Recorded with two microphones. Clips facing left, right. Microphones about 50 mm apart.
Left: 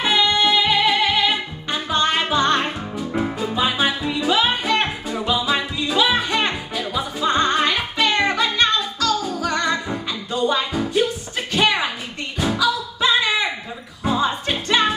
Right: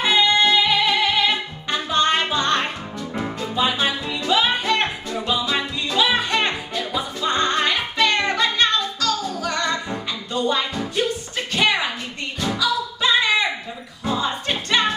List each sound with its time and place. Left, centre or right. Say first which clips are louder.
0.0 s music: right 1 dB; centre
2.0 s music: left 1 dB; centre
9.5 s music: left 2 dB; centre
11.6 s a sound: left 1 dB; centre
12.4 s music: left 2 dB; centre